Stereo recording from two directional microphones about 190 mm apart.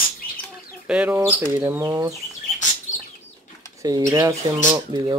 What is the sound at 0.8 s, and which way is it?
Speech, 5° right (ahead or behind).